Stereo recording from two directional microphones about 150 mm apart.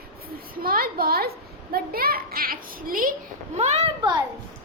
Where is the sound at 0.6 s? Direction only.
75° right (ahead or behind).